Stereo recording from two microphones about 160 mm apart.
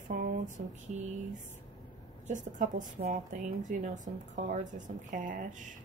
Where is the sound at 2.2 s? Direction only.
50° right (ahead or behind).